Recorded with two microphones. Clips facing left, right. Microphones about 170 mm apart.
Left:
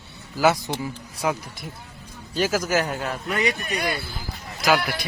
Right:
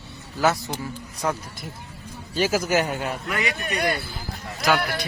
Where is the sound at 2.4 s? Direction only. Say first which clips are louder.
Right 1 dB; 10° right (ahead or behind).